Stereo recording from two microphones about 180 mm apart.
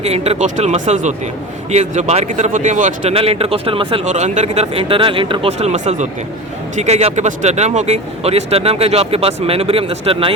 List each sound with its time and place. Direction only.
0.0 s speech: 35° right (ahead or behind)
4.0 s speech: 40° right (ahead or behind)